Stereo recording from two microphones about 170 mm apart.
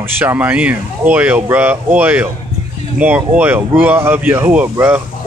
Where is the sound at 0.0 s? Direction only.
10° right (ahead or behind).